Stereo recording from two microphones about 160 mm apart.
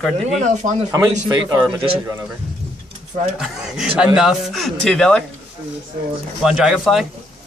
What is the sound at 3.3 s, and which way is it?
A man's voice, 5° right (ahead or behind).